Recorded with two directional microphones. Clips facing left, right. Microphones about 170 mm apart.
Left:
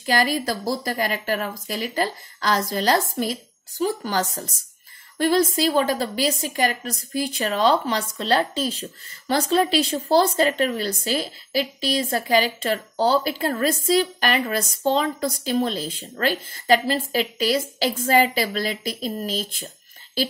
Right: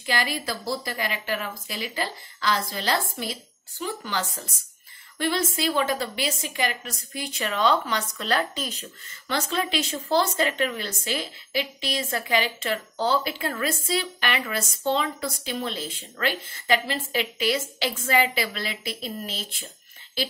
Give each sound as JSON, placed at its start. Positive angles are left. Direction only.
{"t": 0.0, "sound": "a woman's voice", "side_deg": 40}